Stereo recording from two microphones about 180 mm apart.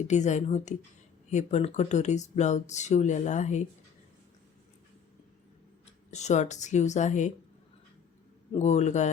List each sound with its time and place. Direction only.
0.1 s speech: 40° left (ahead or behind)
6.1 s speech: 40° left (ahead or behind)
8.5 s speech: 40° left (ahead or behind)